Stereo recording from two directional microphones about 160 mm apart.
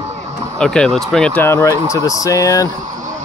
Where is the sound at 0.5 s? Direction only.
5° left (ahead or behind); by 2.7 s 20° left (ahead or behind).